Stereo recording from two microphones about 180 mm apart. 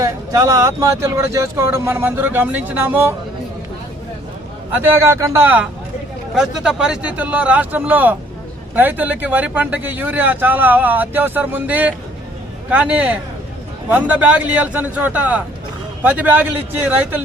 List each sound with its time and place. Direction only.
0.0 s speech: 20° right (ahead or behind)
5.0 s speech: 15° right (ahead or behind)